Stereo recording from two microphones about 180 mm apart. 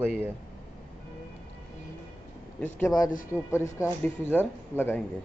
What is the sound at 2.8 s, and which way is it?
Speech, 20° left (ahead or behind).